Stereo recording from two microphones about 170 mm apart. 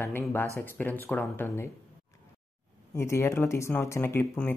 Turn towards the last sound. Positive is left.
turn(degrees=10)  # may be behind; listen again after turning